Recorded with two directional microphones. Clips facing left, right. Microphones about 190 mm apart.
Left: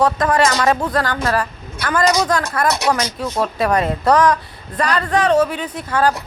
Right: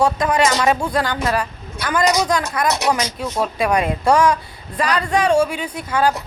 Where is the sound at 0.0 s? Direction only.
20° right (ahead or behind).